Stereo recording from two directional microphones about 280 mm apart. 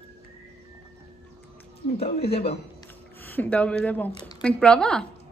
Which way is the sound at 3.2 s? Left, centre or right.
Centre.